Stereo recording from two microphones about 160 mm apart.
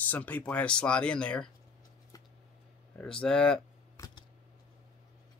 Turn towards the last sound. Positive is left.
turn(degrees=30)  # may be behind; listen again after turning